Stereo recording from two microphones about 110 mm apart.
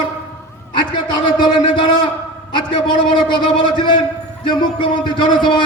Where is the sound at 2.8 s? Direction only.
45° left (ahead or behind).